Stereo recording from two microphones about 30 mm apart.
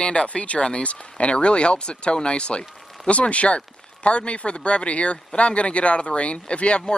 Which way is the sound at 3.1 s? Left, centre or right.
Left.